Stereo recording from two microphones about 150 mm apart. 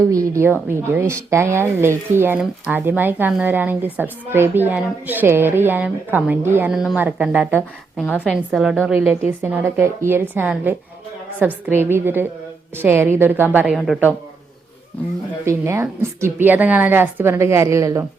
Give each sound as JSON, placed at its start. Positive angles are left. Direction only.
{"t": 0.0, "sound": "a woman's voice", "side_deg": -20}
{"t": 13.7, "sound": "a woman's voice", "side_deg": 5}
{"t": 15.4, "sound": "a woman's voice", "side_deg": -20}